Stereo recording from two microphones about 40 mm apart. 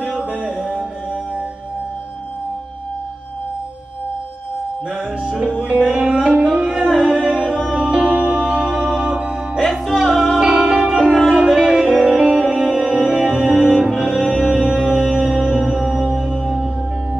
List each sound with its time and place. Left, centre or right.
0.2 s music: right
5.4 s music: right
9.7 s music: centre
11.1 s music: centre
11.3 s music: centre
13.2 s music: centre